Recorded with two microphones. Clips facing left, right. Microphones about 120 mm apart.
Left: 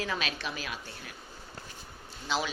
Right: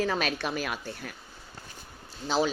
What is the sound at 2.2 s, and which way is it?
Speech, 35° right (ahead or behind).